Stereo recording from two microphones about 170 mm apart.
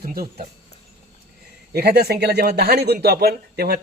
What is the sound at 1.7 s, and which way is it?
Speech, 70° right (ahead or behind).